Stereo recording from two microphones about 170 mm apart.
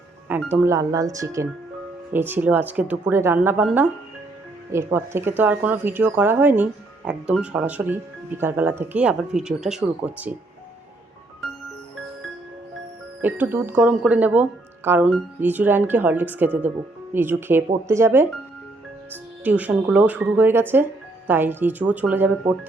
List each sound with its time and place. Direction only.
0.3 s speech: 10° right (ahead or behind)
13.2 s speech: 10° right (ahead or behind)